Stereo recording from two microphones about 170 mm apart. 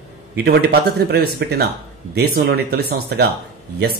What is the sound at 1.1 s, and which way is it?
Speech, 70° right (ahead or behind).